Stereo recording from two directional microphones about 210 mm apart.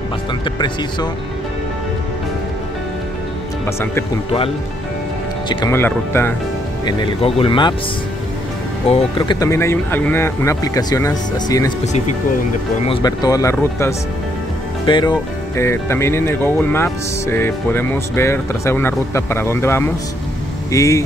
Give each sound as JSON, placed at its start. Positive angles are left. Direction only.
{"t": 5.7, "sound": "speech", "side_deg": 10}
{"t": 6.9, "sound": "speech", "side_deg": 25}
{"t": 8.8, "sound": "speech", "side_deg": 25}
{"t": 12.8, "sound": "speech", "side_deg": 20}